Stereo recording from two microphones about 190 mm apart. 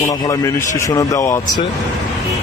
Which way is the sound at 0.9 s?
15° left (ahead or behind).